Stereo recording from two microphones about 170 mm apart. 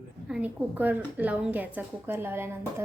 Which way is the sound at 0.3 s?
5° right (ahead or behind).